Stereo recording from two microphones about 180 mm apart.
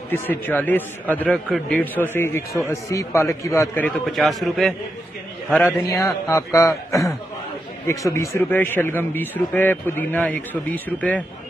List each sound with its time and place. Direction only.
0.1 s a man's voice: 10° left (ahead or behind)
5.5 s a man's voice: 10° left (ahead or behind)
7.8 s a man's voice: 15° left (ahead or behind)